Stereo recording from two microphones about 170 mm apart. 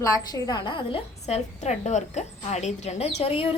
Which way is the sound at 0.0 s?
25° left (ahead or behind).